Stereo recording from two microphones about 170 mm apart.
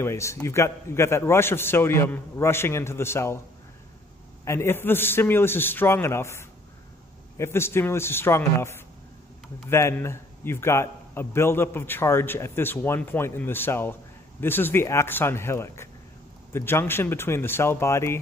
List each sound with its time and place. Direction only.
0.0 s a man's voice: 15° left (ahead or behind)
4.5 s a man's voice: 15° left (ahead or behind)